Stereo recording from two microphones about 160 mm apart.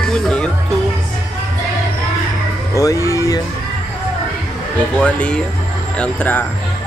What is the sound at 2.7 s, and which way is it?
Speech, 20° left (ahead or behind).